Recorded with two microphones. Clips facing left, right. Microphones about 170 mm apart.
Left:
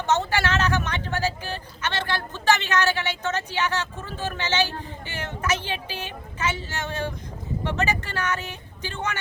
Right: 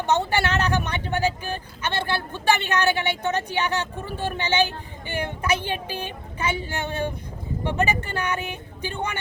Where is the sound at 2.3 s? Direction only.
15° right (ahead or behind).